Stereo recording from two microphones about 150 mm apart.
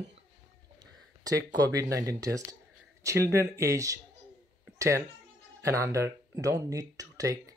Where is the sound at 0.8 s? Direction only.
25° right (ahead or behind).